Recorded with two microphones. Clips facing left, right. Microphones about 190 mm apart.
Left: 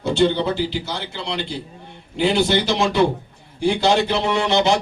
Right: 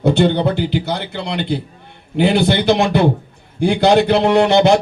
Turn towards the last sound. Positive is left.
turn(degrees=-60)  # may be behind; listen again after turning